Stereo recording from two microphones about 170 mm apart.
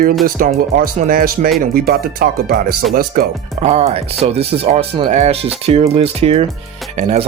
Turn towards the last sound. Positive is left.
turn(degrees=-40)  # may be behind; listen again after turning